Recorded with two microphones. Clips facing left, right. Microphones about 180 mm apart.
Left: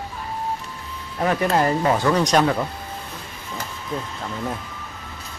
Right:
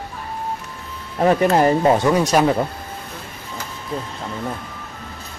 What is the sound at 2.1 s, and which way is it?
Speech, 10° right (ahead or behind).